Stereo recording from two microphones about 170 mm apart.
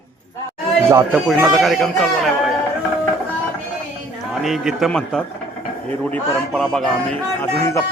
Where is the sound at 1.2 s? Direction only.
Centre (ahead or behind).